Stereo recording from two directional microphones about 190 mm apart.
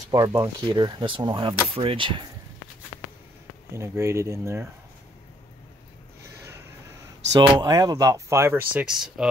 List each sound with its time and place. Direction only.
0.1 s speech: 20° right (ahead or behind)
3.7 s speech: 15° right (ahead or behind)
6.2 s a sound: 15° right (ahead or behind)
7.3 s speech: 20° right (ahead or behind); by 9.3 s 5° right (ahead or behind)